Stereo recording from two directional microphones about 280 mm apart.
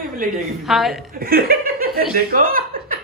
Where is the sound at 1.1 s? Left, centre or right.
Right.